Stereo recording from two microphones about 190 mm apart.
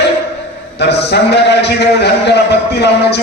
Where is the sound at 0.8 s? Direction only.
60° left (ahead or behind).